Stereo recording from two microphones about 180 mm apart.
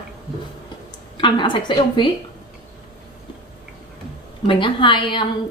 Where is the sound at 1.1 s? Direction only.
25° left (ahead or behind).